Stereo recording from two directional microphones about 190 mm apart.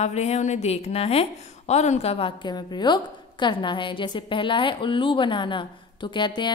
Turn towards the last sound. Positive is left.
turn(degrees=25)  # may be behind; listen again after turning